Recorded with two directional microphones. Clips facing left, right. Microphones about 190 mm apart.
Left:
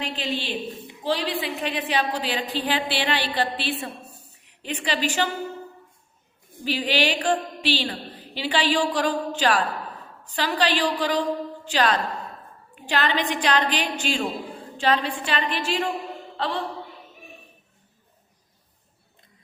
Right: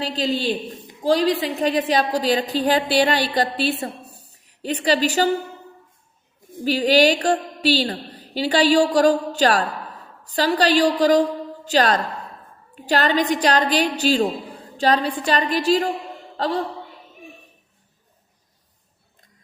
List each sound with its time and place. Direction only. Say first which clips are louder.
0.0 s a woman's voice: right 6 dB; 35° right (ahead or behind)
6.7 s a woman's voice: right 8 dB; 40° right (ahead or behind)